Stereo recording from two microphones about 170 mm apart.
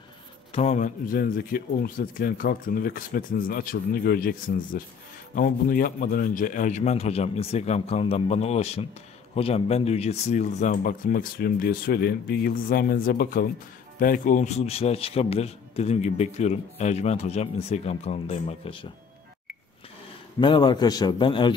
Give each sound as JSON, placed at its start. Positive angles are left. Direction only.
{"t": 0.5, "sound": "speech", "side_deg": 40}
{"t": 20.3, "sound": "a man's voice", "side_deg": 25}